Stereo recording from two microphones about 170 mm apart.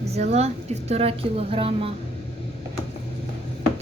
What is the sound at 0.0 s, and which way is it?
A woman's voice, 40° right (ahead or behind).